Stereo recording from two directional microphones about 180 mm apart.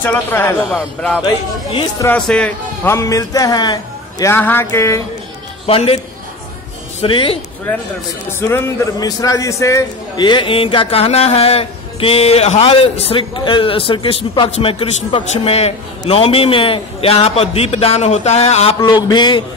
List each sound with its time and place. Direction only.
0.0 s a man's voice: 10° left (ahead or behind)
1.2 s a man's voice: 25° left (ahead or behind)
2.0 s speech: 5° left (ahead or behind)
5.7 s a man's voice: 30° left (ahead or behind)
7.0 s a man's voice: 30° left (ahead or behind)
8.3 s a man's voice: 15° left (ahead or behind)